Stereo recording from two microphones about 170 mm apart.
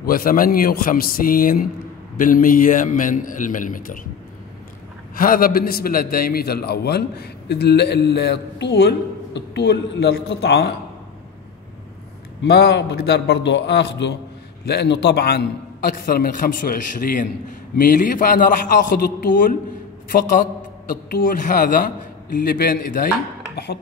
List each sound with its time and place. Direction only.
0.0 s a man's voice: 55° left (ahead or behind)
5.1 s a man's voice: 55° left (ahead or behind); by 10.7 s 70° left (ahead or behind)
12.4 s a man's voice: 80° left
14.7 s a man's voice: 75° left (ahead or behind); by 23.0 s 60° left (ahead or behind)